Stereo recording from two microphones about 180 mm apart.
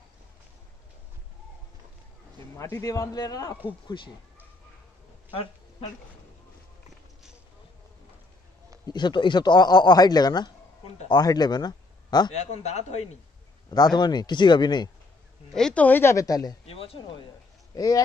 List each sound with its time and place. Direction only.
2.5 s speech: 15° left (ahead or behind)
5.3 s a sound: 30° left (ahead or behind)
8.8 s a man's voice: 25° left (ahead or behind)
12.4 s speech: 40° left (ahead or behind)
13.7 s speech: 20° left (ahead or behind)
15.5 s speech: 5° left (ahead or behind); by 16.5 s 20° left (ahead or behind)
16.6 s speech: 30° left (ahead or behind)
17.7 s speech: 20° left (ahead or behind)